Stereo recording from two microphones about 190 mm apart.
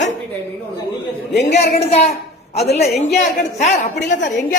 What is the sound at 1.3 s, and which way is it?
A man's voice, 40° left (ahead or behind).